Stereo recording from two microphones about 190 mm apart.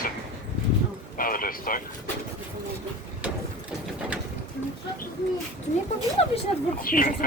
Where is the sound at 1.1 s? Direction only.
50° left (ahead or behind).